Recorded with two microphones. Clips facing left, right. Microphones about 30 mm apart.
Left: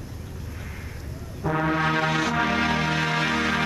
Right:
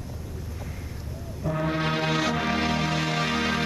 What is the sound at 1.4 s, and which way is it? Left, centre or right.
Music, left.